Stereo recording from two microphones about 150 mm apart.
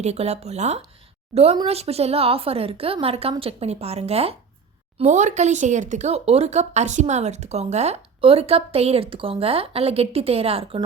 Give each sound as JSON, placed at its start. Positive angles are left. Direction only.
{"t": 0.0, "sound": "a woman's voice", "side_deg": -45}